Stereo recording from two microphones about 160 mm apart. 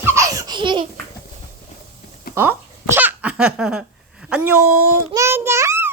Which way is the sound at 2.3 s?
15° right (ahead or behind).